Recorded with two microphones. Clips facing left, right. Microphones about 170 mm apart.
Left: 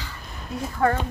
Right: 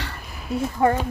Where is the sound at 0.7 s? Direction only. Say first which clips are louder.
Right 2 dB; 15° right (ahead or behind).